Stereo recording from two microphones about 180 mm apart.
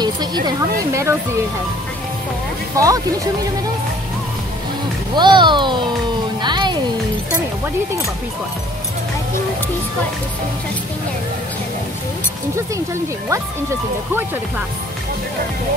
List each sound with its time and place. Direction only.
0.0 s a woman's voice: 25° right (ahead or behind)
2.7 s speech: 20° right (ahead or behind)
5.1 s a woman's voice: 25° right (ahead or behind)
6.4 s music: 25° right (ahead or behind)
13.3 s speech: 15° right (ahead or behind)